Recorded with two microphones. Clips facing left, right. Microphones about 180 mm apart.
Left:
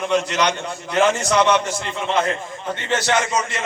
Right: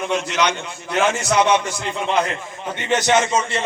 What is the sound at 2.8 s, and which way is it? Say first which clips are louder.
Speech: right 3 dB; 15° right (ahead or behind).